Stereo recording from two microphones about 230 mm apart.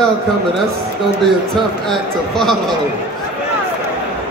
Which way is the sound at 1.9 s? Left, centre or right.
Centre.